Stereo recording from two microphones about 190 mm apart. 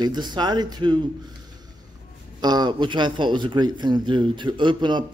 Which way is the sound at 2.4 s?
20° right (ahead or behind).